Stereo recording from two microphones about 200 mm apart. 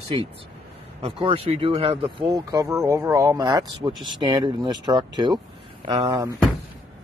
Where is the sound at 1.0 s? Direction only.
30° right (ahead or behind).